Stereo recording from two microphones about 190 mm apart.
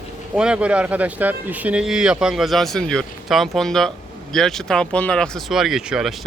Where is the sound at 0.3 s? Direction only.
5° right (ahead or behind).